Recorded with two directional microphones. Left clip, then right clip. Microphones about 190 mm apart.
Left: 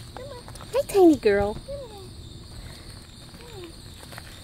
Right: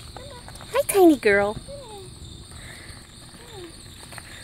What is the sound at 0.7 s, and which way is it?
Speech, centre (ahead or behind).